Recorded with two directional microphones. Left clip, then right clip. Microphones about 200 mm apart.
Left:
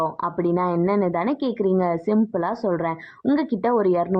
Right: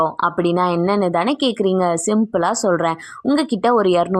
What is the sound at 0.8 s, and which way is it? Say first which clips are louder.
Speech: right 4 dB; 30° right (ahead or behind).